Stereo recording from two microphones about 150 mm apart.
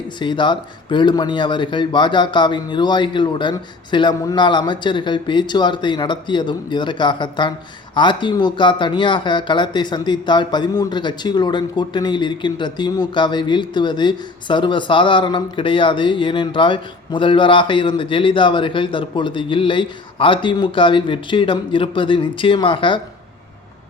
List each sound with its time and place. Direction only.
0.2 s speech: 30° left (ahead or behind)